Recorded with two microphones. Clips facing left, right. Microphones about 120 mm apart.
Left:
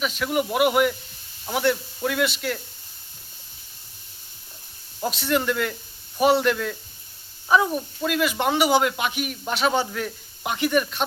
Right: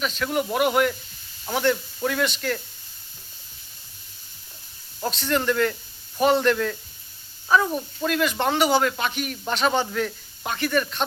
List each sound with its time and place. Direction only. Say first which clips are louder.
0.0 s speech: left 1 dB; 5° left (ahead or behind)
4.9 s speech: left 1 dB; 10° left (ahead or behind)
10.4 s speech: left 2 dB; 15° left (ahead or behind)